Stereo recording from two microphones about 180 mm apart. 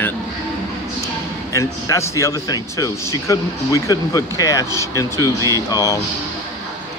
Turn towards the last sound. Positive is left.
turn(degrees=20)  # may be behind; listen again after turning